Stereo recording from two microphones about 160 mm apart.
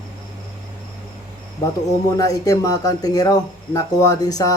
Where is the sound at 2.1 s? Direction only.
20° left (ahead or behind).